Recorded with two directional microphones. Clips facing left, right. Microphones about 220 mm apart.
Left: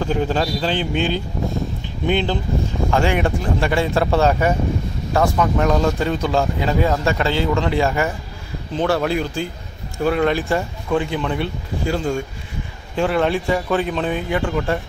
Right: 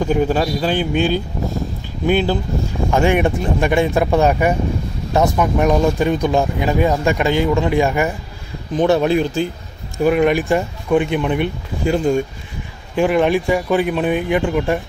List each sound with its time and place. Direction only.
0.0 s speech: 10° right (ahead or behind)